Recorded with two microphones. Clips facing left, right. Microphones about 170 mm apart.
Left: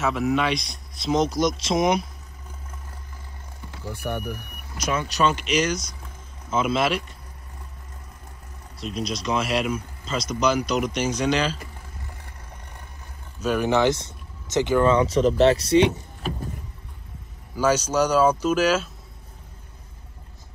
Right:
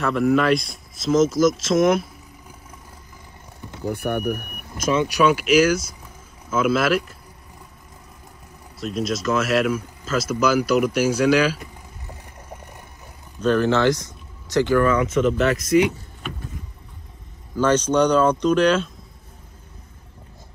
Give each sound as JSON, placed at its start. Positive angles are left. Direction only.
{"t": 0.0, "sound": "speech", "side_deg": 0}
{"t": 3.8, "sound": "speech", "side_deg": -60}
{"t": 5.0, "sound": "speech", "side_deg": -10}
{"t": 8.7, "sound": "speech", "side_deg": 0}
{"t": 13.4, "sound": "speech", "side_deg": 10}
{"t": 17.6, "sound": "speech", "side_deg": 10}